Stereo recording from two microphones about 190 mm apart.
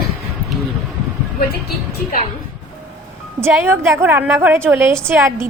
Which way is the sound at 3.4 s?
15° right (ahead or behind).